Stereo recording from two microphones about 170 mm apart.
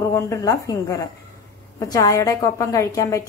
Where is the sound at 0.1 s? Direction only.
20° left (ahead or behind).